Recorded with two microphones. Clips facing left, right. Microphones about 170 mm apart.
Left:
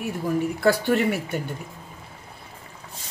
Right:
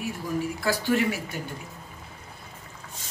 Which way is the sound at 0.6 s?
60° left (ahead or behind).